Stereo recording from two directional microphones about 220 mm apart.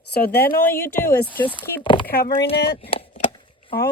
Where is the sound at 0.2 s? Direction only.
10° left (ahead or behind).